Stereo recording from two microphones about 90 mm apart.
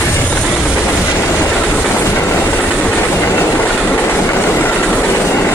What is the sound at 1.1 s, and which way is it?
Train, 25° left (ahead or behind).